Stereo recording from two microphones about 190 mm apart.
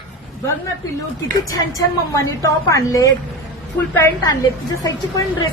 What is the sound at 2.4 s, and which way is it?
A woman's voice, 15° left (ahead or behind).